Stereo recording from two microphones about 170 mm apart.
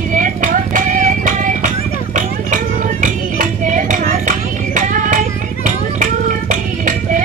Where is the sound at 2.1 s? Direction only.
50° right (ahead or behind).